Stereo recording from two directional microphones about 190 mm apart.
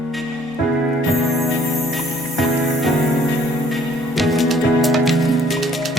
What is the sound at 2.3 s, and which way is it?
Music, centre (ahead or behind).